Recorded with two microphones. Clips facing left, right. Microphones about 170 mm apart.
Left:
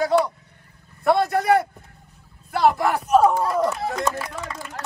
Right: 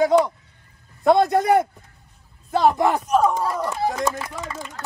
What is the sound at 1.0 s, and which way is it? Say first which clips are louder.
A man's voice: right 2 dB; 20° right (ahead or behind).